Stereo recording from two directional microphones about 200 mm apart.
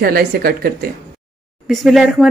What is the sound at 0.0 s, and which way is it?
Speech, 50° right (ahead or behind).